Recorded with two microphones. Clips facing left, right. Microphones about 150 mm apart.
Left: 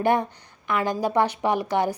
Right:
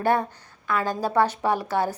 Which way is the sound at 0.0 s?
15° left (ahead or behind).